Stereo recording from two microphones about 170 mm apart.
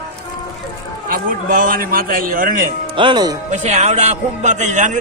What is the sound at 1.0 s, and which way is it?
A man's voice, 55° right (ahead or behind).